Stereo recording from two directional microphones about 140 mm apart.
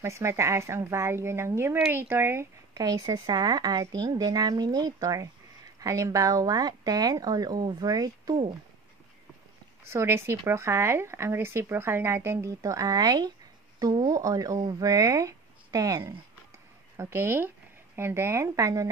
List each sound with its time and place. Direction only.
0.0 s speech: 20° right (ahead or behind)
2.7 s speech: 25° right (ahead or behind)
9.8 s speech: 15° right (ahead or behind)